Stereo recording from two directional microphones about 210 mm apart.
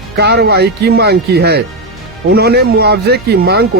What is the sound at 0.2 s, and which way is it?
Speech, 50° right (ahead or behind).